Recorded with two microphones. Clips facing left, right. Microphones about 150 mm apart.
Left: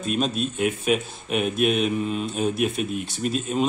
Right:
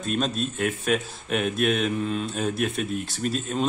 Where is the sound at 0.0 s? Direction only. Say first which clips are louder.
Left 2 dB; 5° left (ahead or behind).